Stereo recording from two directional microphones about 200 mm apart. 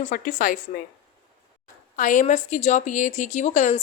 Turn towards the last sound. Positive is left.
turn(degrees=35)  # may be behind; listen again after turning